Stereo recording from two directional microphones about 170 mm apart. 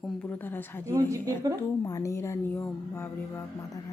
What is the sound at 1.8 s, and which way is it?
Speech, 20° left (ahead or behind).